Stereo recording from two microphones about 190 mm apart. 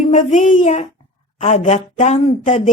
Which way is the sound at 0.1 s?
40° left (ahead or behind).